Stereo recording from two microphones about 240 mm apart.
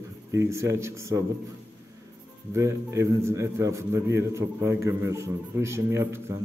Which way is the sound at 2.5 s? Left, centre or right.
Centre.